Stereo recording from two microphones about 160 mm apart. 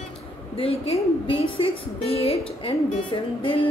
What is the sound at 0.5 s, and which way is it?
A woman's voice, 40° left (ahead or behind).